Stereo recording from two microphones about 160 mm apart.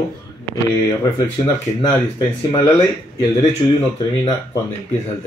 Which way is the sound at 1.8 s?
30° left (ahead or behind).